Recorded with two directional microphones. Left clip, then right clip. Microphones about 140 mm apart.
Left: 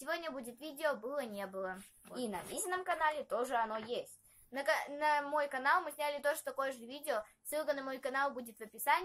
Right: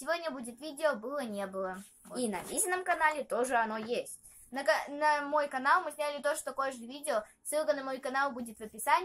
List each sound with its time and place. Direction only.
0.0 s speech: 20° left (ahead or behind)
2.2 s a woman's voice: 15° right (ahead or behind)
4.6 s a child's voice: 15° left (ahead or behind)